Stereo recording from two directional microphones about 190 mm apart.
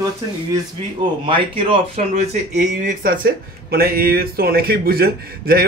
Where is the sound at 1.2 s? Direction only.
25° right (ahead or behind).